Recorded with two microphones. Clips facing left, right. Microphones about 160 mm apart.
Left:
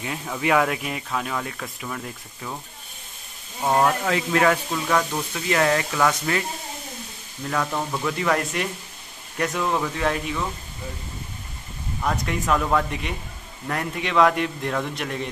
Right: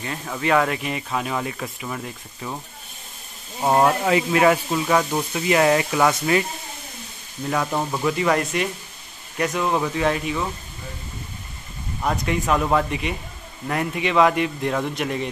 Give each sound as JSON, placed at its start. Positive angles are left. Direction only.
{"t": 0.0, "sound": "speech", "side_deg": 5}
{"t": 3.6, "sound": "speech", "side_deg": -15}
{"t": 7.4, "sound": "speech", "side_deg": -15}
{"t": 12.0, "sound": "speech", "side_deg": -10}